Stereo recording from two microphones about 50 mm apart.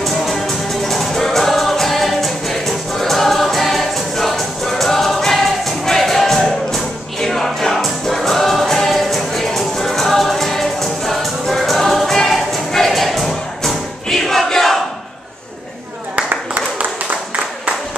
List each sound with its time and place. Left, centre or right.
0.0 s music: centre